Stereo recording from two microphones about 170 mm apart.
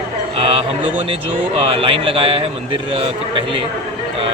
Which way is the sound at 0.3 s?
35° right (ahead or behind).